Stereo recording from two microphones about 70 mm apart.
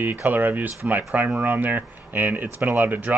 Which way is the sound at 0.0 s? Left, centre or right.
Right.